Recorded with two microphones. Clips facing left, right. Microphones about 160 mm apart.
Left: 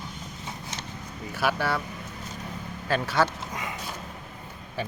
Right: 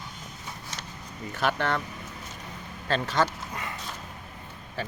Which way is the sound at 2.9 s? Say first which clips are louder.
Left 1 dB; 10° left (ahead or behind).